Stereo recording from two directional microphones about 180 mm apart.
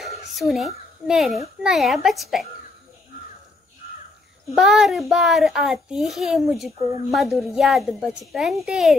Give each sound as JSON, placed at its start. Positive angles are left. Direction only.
{"t": 0.0, "sound": "a sound", "side_deg": 0}
{"t": 1.6, "sound": "a child's voice", "side_deg": 0}
{"t": 4.6, "sound": "a child's voice", "side_deg": 0}